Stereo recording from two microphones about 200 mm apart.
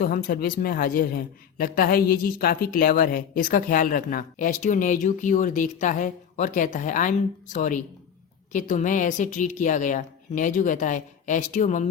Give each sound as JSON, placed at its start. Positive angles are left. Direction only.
{"t": 0.0, "sound": "a man's voice", "side_deg": 45}